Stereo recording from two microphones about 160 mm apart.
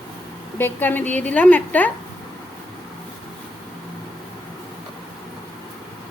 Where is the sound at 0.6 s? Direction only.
10° left (ahead or behind).